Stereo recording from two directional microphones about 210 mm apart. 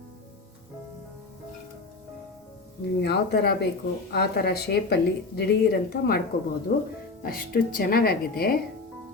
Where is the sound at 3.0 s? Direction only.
50° left (ahead or behind).